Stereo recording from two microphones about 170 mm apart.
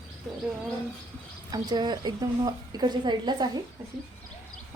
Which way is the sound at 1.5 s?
25° right (ahead or behind).